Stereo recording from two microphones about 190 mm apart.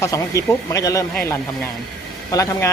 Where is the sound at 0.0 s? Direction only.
15° left (ahead or behind).